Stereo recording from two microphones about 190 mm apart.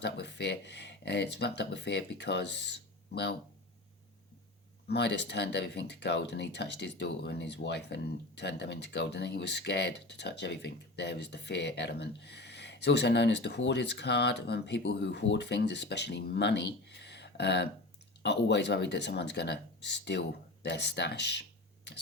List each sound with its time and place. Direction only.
0.0 s speech: 65° left (ahead or behind)
4.9 s speech: 65° left (ahead or behind)